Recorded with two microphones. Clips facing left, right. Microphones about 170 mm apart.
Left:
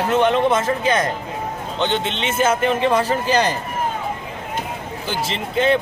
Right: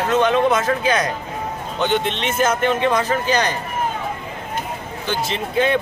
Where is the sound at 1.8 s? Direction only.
Centre (ahead or behind).